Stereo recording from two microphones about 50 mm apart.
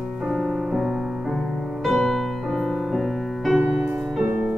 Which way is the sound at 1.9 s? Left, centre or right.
Centre.